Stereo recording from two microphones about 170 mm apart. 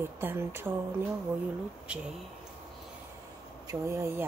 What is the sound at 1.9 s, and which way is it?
Speech, 5° right (ahead or behind).